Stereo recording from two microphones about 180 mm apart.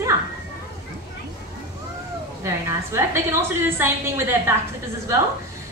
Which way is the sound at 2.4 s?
15° right (ahead or behind).